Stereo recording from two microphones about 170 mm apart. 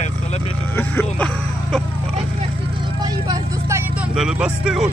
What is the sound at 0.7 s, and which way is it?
Music, 10° left (ahead or behind).